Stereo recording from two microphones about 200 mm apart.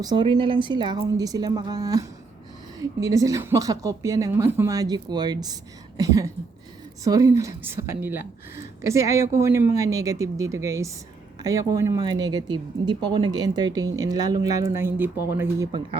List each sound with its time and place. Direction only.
0.0 s speech: 20° right (ahead or behind)